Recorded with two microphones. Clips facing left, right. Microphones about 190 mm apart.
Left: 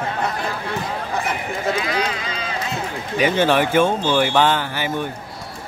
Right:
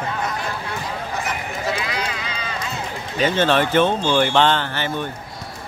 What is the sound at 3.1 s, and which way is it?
Speech, 10° left (ahead or behind).